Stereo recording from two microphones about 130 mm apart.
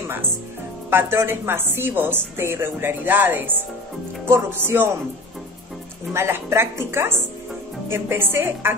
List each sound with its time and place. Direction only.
1.1 s a woman's voice: 15° right (ahead or behind)
6.1 s a woman's voice: 20° right (ahead or behind)